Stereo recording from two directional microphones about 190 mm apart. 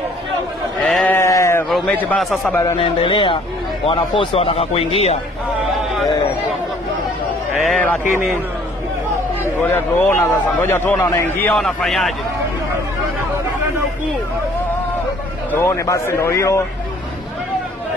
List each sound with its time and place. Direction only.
0.8 s sheep: 5° left (ahead or behind)
1.7 s a man's voice: 10° left (ahead or behind)
2.8 s speech: 25° left (ahead or behind)
7.6 s a man's voice: 10° left (ahead or behind)
9.6 s a man's voice: 10° left (ahead or behind)
15.5 s a man's voice: 15° left (ahead or behind)